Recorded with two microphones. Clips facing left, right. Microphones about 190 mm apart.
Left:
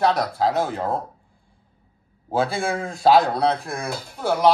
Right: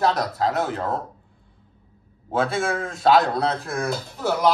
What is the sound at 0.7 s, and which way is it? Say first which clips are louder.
Speech: left 1 dB; 30° left (ahead or behind).